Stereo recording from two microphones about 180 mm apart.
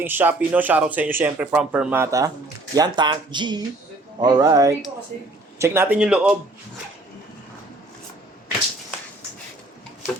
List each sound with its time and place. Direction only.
0.0 s speech: 10° right (ahead or behind)